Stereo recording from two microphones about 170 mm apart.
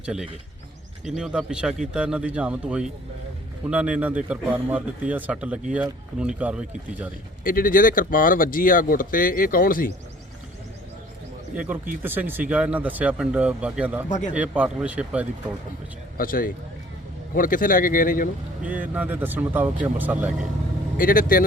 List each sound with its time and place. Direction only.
0.0 s a man's voice: 5° right (ahead or behind)
7.4 s speech: 55° left (ahead or behind)
11.5 s speech: 10° right (ahead or behind)
16.1 s speech: 55° left (ahead or behind)
18.6 s speech: 10° right (ahead or behind)
21.0 s speech: 55° left (ahead or behind)